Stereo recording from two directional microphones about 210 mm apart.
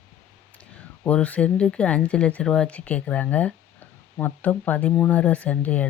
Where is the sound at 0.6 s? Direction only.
5° left (ahead or behind).